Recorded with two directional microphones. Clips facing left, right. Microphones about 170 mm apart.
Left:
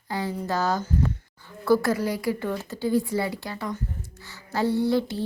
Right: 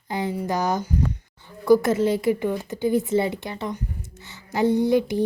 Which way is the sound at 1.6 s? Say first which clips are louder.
Right 4 dB; 20° right (ahead or behind).